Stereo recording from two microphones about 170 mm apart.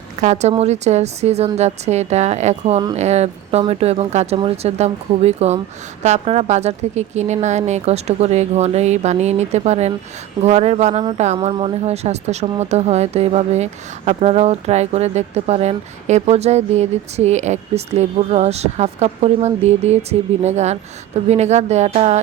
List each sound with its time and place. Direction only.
0.2 s a woman's voice: 45° right (ahead or behind)